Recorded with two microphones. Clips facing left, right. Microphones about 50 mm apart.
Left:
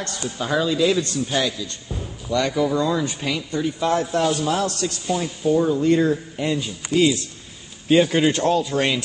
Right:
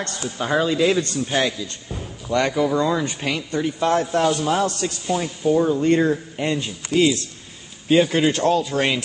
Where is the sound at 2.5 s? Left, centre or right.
Right.